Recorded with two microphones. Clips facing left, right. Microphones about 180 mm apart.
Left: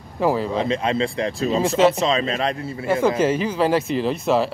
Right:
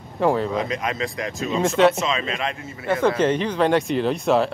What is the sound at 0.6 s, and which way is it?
Speech, 30° left (ahead or behind).